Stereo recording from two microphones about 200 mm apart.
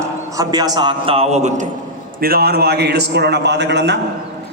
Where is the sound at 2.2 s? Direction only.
50° right (ahead or behind).